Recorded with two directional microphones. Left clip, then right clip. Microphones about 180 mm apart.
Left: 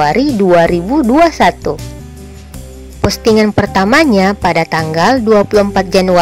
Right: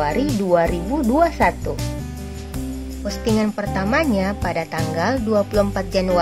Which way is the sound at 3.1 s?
45° left (ahead or behind).